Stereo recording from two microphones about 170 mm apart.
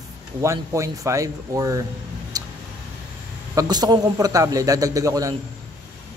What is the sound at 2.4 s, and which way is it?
Vehicle, 20° right (ahead or behind).